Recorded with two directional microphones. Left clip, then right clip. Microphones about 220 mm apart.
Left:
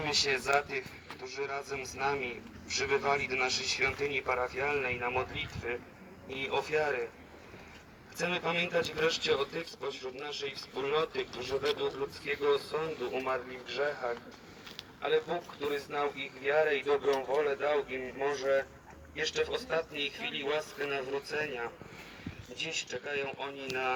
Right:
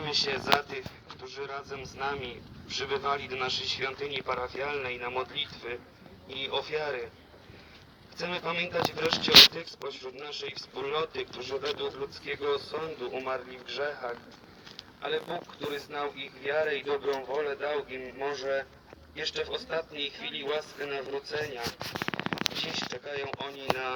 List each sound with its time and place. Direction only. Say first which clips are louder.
0.0 s speech: even; 30° left (ahead or behind)
8.2 s speech: even; 45° left (ahead or behind)
23.0 s speech: even; 40° left (ahead or behind)